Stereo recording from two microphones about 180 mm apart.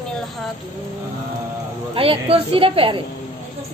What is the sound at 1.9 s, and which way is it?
A woman's voice, 30° right (ahead or behind).